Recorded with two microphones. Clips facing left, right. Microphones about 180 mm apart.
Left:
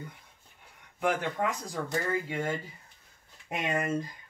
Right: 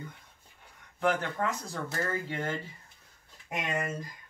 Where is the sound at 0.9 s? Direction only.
10° left (ahead or behind).